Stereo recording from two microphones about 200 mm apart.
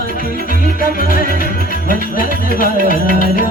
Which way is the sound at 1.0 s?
45° left (ahead or behind).